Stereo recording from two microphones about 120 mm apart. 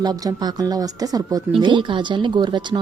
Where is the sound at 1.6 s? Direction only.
40° right (ahead or behind).